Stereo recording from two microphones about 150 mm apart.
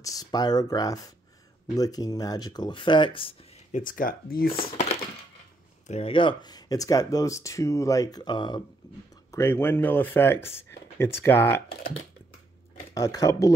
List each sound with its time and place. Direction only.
0.0 s speech: 25° left (ahead or behind)
3.7 s speech: 65° left (ahead or behind)
4.5 s speech: 40° left (ahead or behind)
9.1 s speech: 15° left (ahead or behind)
12.9 s speech: 20° left (ahead or behind)